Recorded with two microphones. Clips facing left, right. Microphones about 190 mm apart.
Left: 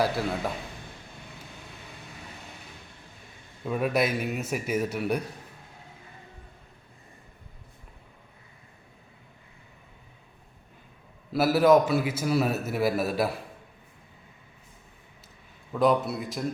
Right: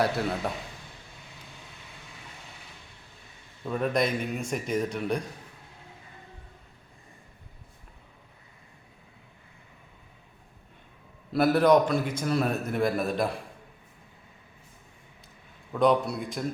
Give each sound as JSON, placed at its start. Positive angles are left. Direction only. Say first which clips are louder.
{"t": 0.0, "sound": "a man's voice", "louder": "even", "side_deg": 0}
{"t": 3.7, "sound": "speech", "louder": "left 1 dB", "side_deg": 5}
{"t": 11.3, "sound": "a man's voice", "louder": "left 1 dB", "side_deg": 5}
{"t": 15.7, "sound": "a man's voice", "louder": "even", "side_deg": 0}